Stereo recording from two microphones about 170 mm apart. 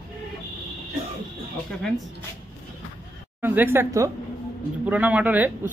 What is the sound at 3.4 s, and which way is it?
Speech, 10° right (ahead or behind).